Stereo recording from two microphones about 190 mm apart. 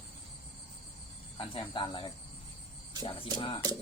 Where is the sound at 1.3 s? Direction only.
25° left (ahead or behind).